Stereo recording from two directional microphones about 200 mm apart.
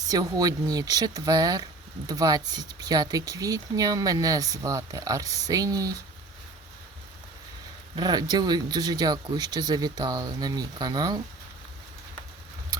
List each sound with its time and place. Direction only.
0.1 s speech: 20° right (ahead or behind)
7.9 s speech: 20° right (ahead or behind)